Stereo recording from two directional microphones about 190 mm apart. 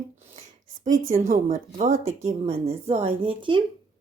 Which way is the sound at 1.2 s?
45° right (ahead or behind).